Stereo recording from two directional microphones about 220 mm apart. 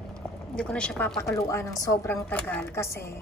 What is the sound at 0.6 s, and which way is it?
A woman's voice, 5° left (ahead or behind).